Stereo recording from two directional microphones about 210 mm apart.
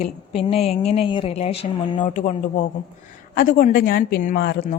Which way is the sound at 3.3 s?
40° left (ahead or behind).